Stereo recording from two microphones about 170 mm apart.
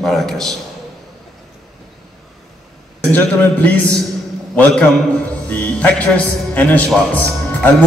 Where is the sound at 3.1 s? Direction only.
10° left (ahead or behind).